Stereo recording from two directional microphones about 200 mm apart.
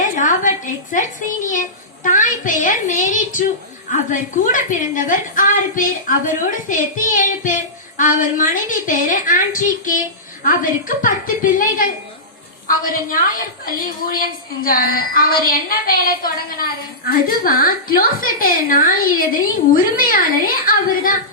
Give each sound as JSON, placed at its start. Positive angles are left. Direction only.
{"t": 0.0, "sound": "a woman's voice", "side_deg": 40}